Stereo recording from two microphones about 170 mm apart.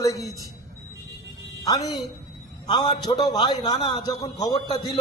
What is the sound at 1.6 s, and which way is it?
A man's voice, 20° left (ahead or behind).